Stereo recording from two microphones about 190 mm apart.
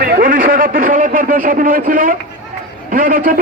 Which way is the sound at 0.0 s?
50° right (ahead or behind).